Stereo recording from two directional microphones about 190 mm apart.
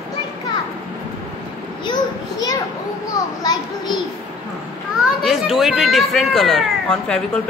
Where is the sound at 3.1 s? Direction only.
20° left (ahead or behind).